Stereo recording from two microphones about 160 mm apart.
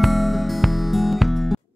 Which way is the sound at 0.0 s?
Centre (ahead or behind).